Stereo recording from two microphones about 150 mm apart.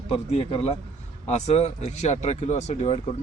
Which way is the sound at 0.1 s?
40° left (ahead or behind).